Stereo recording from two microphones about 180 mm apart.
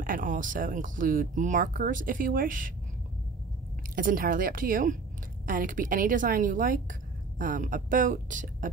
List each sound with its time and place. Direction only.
0.0 s a woman's voice: 50° right (ahead or behind)
3.9 s a woman's voice: 50° right (ahead or behind)